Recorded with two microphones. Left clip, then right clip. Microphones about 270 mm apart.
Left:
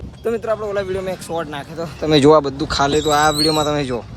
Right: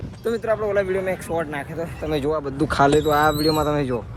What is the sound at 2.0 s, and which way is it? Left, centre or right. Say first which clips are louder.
Speech: left 11 dB; left.